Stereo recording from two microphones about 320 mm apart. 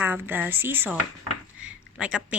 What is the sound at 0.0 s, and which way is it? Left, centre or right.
Speech, centre.